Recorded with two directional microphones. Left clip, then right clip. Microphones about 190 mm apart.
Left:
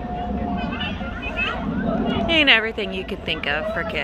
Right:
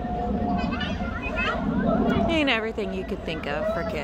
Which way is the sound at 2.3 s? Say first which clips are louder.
Left 7 dB; 15° right (ahead or behind).